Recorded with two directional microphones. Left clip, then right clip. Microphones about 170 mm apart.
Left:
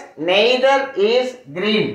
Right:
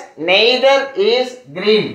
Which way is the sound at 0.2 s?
15° right (ahead or behind).